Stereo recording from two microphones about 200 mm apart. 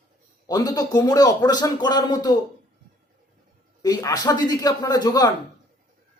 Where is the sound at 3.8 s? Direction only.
20° left (ahead or behind).